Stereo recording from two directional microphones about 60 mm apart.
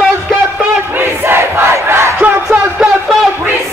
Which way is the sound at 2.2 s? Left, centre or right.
Right.